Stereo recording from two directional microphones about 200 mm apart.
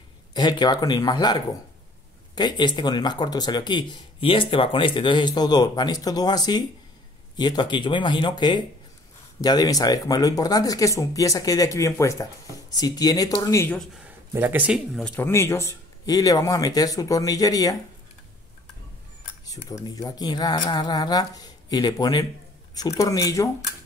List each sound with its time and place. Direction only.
0.3 s speech: 20° left (ahead or behind)
14.3 s speech: 10° right (ahead or behind)
15.1 s speech: 10° left (ahead or behind)
19.4 s speech: 20° left (ahead or behind)